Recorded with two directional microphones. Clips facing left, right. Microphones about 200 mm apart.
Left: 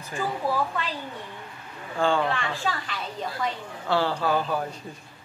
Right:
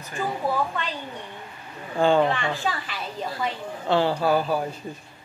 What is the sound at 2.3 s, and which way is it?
Speech, centre (ahead or behind).